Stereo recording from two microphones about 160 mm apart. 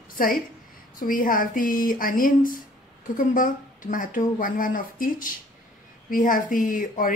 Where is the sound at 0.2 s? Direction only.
60° left (ahead or behind).